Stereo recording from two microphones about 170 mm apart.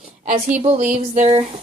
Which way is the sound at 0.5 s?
45° right (ahead or behind).